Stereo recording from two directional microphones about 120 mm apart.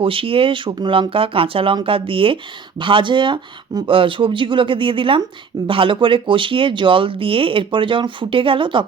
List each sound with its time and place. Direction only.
0.0 s speech: 50° right (ahead or behind)